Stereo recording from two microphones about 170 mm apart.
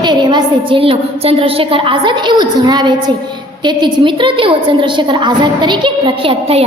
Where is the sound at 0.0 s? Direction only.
25° right (ahead or behind).